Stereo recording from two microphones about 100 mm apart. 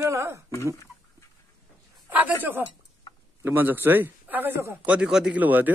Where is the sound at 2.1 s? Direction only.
15° right (ahead or behind).